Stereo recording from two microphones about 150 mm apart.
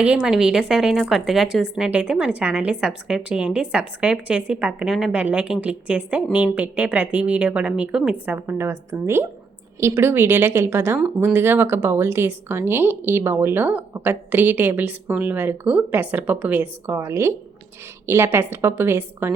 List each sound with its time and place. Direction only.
0.0 s a woman's voice: 5° right (ahead or behind)